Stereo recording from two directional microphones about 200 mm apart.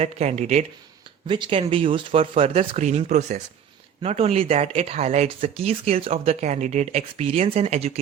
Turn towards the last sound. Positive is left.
turn(degrees=-35)  # may be behind; listen again after turning